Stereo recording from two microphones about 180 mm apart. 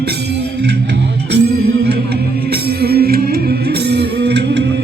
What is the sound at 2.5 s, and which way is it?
Music, 60° right (ahead or behind).